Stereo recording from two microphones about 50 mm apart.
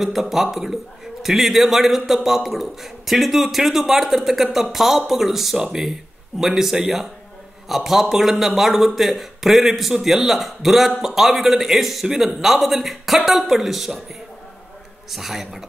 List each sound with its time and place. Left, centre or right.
0.0 s a man's voice: centre
15.0 s a man's voice: centre